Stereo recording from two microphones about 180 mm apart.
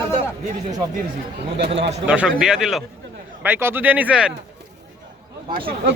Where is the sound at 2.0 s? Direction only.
5° right (ahead or behind).